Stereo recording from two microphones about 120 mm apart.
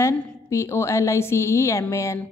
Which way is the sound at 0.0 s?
25° left (ahead or behind).